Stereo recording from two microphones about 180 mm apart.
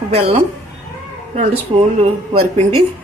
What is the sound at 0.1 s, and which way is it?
Speech, 35° right (ahead or behind).